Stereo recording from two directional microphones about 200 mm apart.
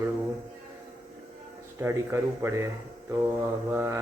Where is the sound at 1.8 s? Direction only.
10° right (ahead or behind).